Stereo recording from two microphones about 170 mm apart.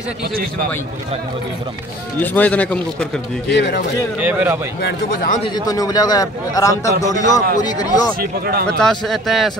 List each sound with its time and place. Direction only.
2.1 s a man's voice: 10° left (ahead or behind)
3.4 s speech: 85° left
4.2 s a man's voice: 10° right (ahead or behind)
5.4 s a man's voice: 25° left (ahead or behind)
8.2 s speech: 65° right (ahead or behind)
8.7 s speech: centre (ahead or behind)